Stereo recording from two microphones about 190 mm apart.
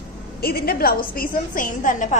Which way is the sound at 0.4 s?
50° left (ahead or behind).